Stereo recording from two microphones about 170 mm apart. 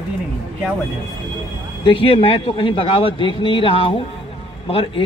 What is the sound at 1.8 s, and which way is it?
Speech, 30° left (ahead or behind).